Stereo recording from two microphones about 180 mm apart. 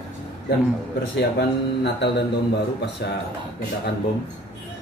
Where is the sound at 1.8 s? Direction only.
70° left (ahead or behind).